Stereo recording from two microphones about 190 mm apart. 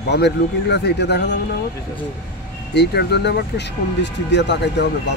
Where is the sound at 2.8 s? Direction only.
60° left (ahead or behind).